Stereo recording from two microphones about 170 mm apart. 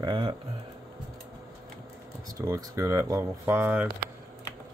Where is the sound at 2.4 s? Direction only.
20° right (ahead or behind).